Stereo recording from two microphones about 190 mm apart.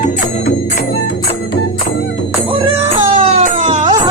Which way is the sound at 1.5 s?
65° left (ahead or behind).